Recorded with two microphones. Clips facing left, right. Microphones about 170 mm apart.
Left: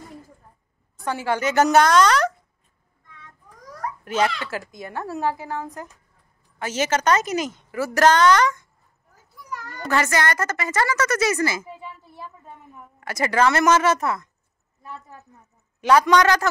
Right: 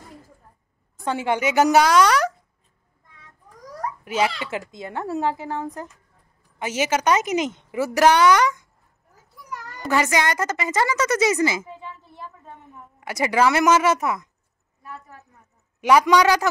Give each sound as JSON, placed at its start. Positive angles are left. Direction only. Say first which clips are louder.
{"t": 1.0, "sound": "a woman's voice", "louder": "right 1 dB", "side_deg": -20}
{"t": 4.0, "sound": "a child's voice", "louder": "left 1 dB", "side_deg": -10}
{"t": 4.4, "sound": "a woman's voice", "louder": "right 1 dB", "side_deg": -20}
{"t": 9.8, "sound": "a woman's voice", "louder": "right 1 dB", "side_deg": -15}
{"t": 11.6, "sound": "a sound", "louder": "even", "side_deg": 10}
{"t": 13.0, "sound": "a woman's voice", "louder": "even", "side_deg": -15}
{"t": 14.8, "sound": "a woman's voice", "louder": "left 1 dB", "side_deg": 25}
{"t": 15.8, "sound": "a woman's voice", "louder": "even", "side_deg": -15}